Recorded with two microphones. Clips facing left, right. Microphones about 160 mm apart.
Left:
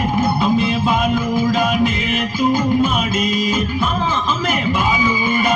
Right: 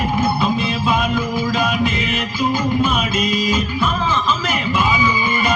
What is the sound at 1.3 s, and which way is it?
Music, 50° left (ahead or behind).